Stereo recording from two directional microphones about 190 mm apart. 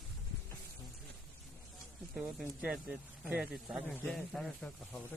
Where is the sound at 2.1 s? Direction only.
5° right (ahead or behind).